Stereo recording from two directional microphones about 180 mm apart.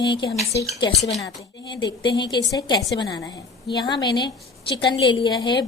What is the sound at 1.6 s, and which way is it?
A woman's voice, 25° left (ahead or behind).